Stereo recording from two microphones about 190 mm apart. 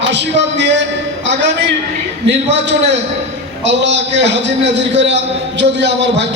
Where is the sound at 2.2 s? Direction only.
65° right (ahead or behind).